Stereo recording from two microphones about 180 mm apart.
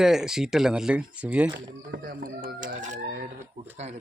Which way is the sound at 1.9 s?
55° right (ahead or behind).